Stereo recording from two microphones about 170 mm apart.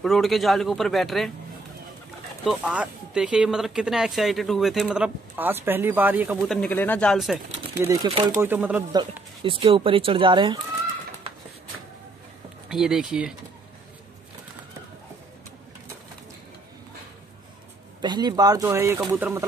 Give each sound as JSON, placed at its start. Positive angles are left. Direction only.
{"t": 0.0, "sound": "speech", "side_deg": 0}
{"t": 2.4, "sound": "speech", "side_deg": 0}
{"t": 6.4, "sound": "speech", "side_deg": 5}
{"t": 7.8, "sound": "speech", "side_deg": -20}
{"t": 9.4, "sound": "speech", "side_deg": -30}
{"t": 12.6, "sound": "speech", "side_deg": 0}
{"t": 18.0, "sound": "speech", "side_deg": -25}